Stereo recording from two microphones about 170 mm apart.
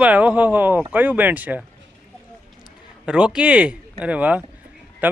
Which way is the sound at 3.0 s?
5° right (ahead or behind).